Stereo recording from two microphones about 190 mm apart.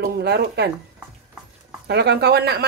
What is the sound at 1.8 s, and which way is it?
Speech, 60° right (ahead or behind).